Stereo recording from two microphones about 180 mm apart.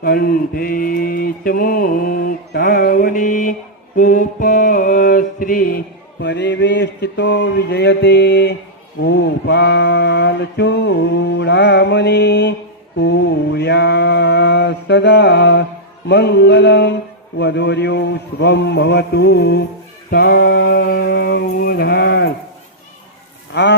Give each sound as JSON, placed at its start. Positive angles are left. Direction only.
{"t": 0.0, "sound": "mantra", "side_deg": 60}
{"t": 17.3, "sound": "a man's voice", "side_deg": 70}
{"t": 20.1, "sound": "a sound", "side_deg": 55}
{"t": 23.5, "sound": "mantra", "side_deg": 70}